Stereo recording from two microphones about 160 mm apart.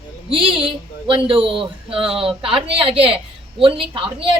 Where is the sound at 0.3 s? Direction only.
35° right (ahead or behind).